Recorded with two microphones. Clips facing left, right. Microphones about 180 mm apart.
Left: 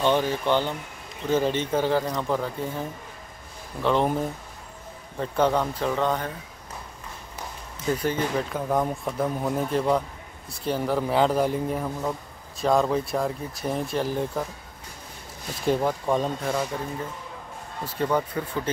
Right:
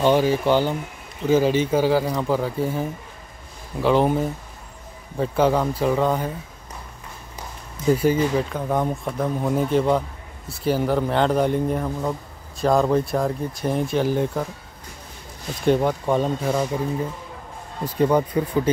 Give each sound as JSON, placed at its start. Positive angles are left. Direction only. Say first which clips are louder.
{"t": 0.0, "sound": "speech", "louder": "right 5 dB", "side_deg": -10}
{"t": 7.9, "sound": "speech", "louder": "right 6 dB", "side_deg": -10}
{"t": 15.6, "sound": "speech", "louder": "right 4 dB", "side_deg": 0}
{"t": 17.8, "sound": "speech", "louder": "right 6 dB", "side_deg": -15}